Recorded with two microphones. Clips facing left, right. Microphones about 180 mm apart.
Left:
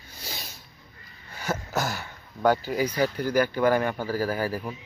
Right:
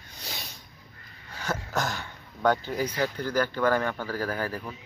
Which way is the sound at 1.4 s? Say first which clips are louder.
Left 1 dB; 5° left (ahead or behind).